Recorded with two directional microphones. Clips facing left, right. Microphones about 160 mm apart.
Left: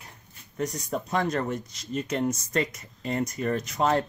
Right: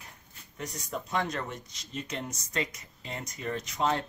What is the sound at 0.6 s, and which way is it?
Speech, 45° left (ahead or behind).